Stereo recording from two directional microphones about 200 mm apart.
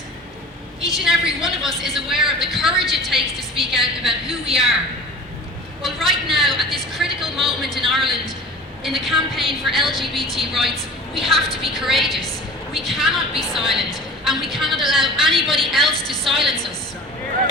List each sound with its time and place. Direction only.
1.0 s a woman's voice: centre (ahead or behind)
4.3 s a woman's voice: 30° right (ahead or behind)
5.8 s a woman's voice: centre (ahead or behind)